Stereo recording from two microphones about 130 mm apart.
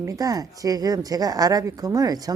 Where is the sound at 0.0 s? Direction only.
25° right (ahead or behind).